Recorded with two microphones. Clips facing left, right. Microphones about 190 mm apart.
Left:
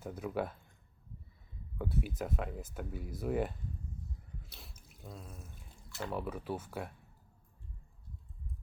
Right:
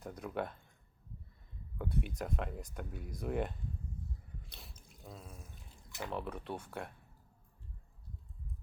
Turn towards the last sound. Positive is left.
turn(degrees=5)  # may be behind; listen again after turning